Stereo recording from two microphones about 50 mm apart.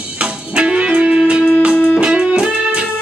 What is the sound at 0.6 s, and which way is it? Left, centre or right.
Music, right.